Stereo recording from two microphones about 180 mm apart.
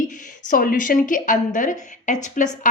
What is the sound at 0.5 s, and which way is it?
A woman's voice, 50° left (ahead or behind).